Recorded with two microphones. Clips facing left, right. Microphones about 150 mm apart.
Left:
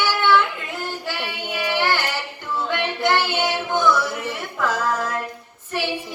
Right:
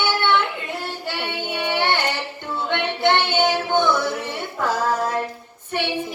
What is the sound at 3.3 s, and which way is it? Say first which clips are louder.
Female singing: right 3 dB; 25° right (ahead or behind).